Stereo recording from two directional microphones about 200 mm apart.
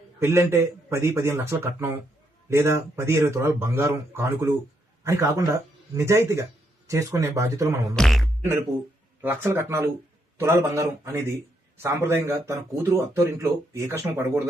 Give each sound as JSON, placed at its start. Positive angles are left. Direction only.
{"t": 0.2, "sound": "speech", "side_deg": -10}
{"t": 7.9, "sound": "speech", "side_deg": 0}
{"t": 9.2, "sound": "speech", "side_deg": -10}